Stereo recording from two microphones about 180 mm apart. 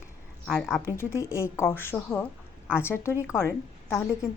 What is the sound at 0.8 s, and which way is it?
Speech, 15° left (ahead or behind).